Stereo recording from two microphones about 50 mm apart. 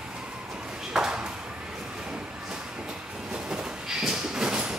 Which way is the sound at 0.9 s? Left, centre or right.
Centre.